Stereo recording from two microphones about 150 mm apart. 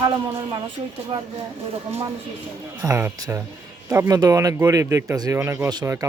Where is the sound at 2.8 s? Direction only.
20° right (ahead or behind).